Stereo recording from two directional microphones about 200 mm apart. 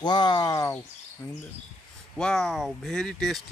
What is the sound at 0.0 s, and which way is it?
Speech, 20° left (ahead or behind).